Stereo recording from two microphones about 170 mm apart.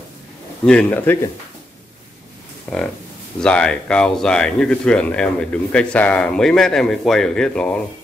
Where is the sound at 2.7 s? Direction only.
5° left (ahead or behind).